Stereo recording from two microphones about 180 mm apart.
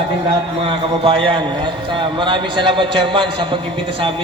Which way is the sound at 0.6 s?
30° right (ahead or behind).